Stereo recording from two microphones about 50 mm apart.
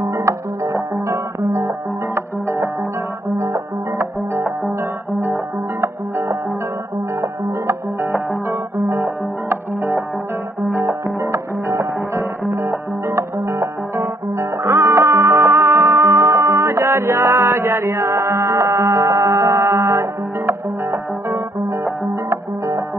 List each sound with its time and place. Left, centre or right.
0.0 s music: right
3.3 s music: right
4.4 s music: right
7.2 s music: right
8.0 s music: right
10.6 s music: right